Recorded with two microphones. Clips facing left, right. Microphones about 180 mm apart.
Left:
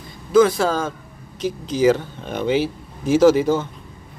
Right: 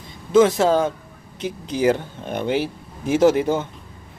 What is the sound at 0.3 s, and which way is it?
Speech, 20° right (ahead or behind).